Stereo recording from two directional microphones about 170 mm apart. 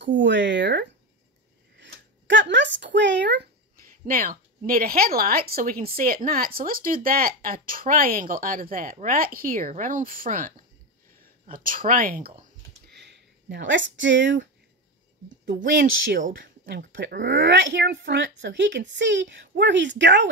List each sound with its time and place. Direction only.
0.0 s speech: 90° right
3.8 s a woman's voice: 55° right (ahead or behind); by 14.5 s 90° right
15.2 s speech: 75° right (ahead or behind)
16.3 s speech: 90° right